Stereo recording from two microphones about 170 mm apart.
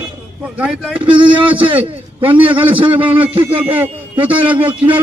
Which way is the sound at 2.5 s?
30° right (ahead or behind).